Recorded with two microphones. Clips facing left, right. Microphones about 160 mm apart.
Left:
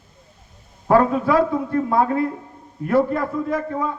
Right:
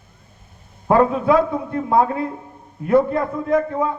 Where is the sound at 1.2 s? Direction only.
20° right (ahead or behind).